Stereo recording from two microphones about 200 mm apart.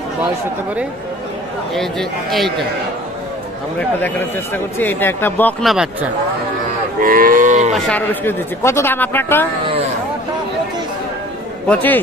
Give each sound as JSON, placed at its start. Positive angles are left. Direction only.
{"t": 1.7, "sound": "a man's voice", "side_deg": 0}
{"t": 4.7, "sound": "a man's voice", "side_deg": 10}
{"t": 7.0, "sound": "cattle", "side_deg": -45}
{"t": 7.7, "sound": "a man's voice", "side_deg": 10}
{"t": 11.6, "sound": "a man's voice", "side_deg": 5}